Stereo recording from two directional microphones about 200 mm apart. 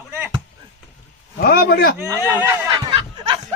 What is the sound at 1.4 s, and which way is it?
Speech, 50° left (ahead or behind).